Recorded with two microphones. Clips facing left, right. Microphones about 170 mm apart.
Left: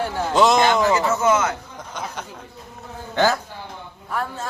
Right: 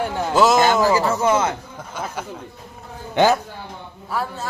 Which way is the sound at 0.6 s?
35° right (ahead or behind).